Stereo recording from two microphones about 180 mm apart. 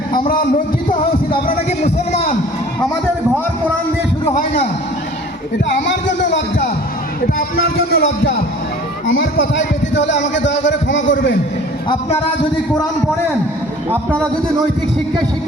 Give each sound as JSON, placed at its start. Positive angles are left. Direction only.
{"t": 4.4, "sound": "a man's voice", "side_deg": 60}
{"t": 5.6, "sound": "music", "side_deg": 80}
{"t": 7.9, "sound": "a man's voice", "side_deg": 60}
{"t": 9.0, "sound": "a man's voice", "side_deg": 90}